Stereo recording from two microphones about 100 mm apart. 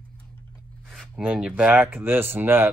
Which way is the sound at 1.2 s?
10° right (ahead or behind).